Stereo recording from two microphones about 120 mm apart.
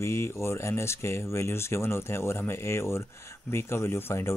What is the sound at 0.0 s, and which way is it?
Speech, 20° left (ahead or behind).